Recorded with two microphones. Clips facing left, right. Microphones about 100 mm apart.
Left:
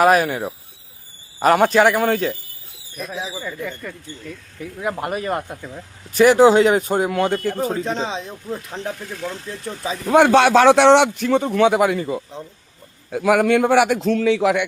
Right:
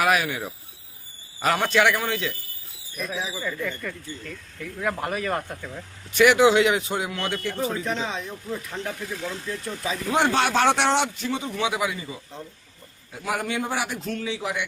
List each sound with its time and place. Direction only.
0.0 s speech: 40° left (ahead or behind)
3.2 s speech: 15° left (ahead or behind)
6.1 s speech: 35° left (ahead or behind)
9.0 s speech: centre (ahead or behind)
9.5 s speech: 30° left (ahead or behind)
10.1 s a man's voice: 55° left (ahead or behind)
13.1 s a man's voice: 75° left (ahead or behind)